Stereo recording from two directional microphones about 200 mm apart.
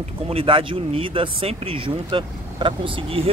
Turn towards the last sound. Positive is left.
turn(degrees=-25)  # may be behind; listen again after turning